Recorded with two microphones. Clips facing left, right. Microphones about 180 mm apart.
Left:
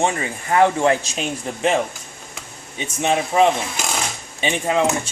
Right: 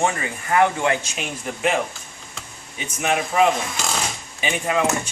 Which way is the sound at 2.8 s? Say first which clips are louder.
Left 3 dB; 30° left (ahead or behind).